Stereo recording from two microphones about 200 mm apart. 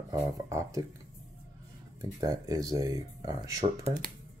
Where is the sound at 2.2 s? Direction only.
15° right (ahead or behind).